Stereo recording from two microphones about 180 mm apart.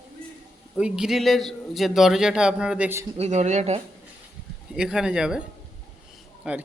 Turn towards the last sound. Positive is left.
turn(degrees=-5)  # may be behind; listen again after turning